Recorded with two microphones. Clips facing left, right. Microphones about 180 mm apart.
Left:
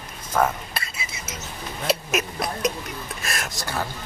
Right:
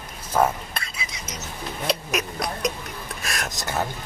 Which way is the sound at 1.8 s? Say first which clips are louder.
Left 2 dB; centre (ahead or behind).